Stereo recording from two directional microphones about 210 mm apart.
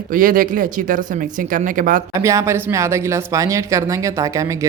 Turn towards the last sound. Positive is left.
turn(degrees=-15)  # may be behind; listen again after turning